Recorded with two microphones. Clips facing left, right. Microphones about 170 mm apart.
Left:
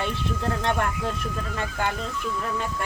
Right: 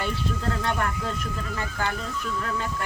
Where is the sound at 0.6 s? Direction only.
20° left (ahead or behind).